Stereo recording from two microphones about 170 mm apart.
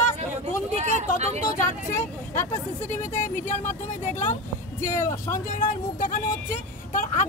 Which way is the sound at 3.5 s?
50° left (ahead or behind).